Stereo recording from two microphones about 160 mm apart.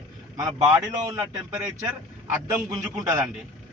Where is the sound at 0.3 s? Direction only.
25° right (ahead or behind).